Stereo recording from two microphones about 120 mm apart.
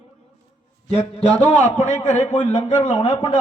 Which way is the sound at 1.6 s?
80° left.